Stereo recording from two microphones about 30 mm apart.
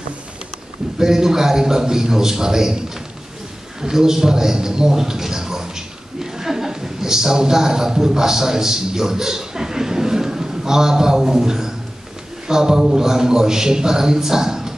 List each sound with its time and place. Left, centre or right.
0.9 s a man's voice: centre
3.8 s a man's voice: centre